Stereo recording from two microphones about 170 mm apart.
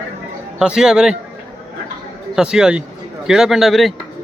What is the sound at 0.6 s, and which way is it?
Speech, 5° right (ahead or behind).